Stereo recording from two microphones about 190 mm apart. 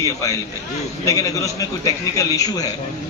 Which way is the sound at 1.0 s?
15° left (ahead or behind).